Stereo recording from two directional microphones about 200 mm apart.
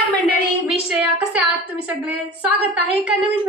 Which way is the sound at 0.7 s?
5° right (ahead or behind).